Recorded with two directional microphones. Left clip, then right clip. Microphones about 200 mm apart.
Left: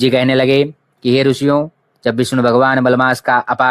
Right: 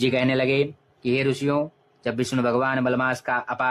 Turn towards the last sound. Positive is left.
turn(degrees=40)  # may be behind; listen again after turning